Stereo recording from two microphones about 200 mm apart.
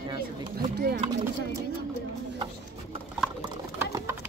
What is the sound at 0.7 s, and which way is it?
Clip-clop, 50° right (ahead or behind).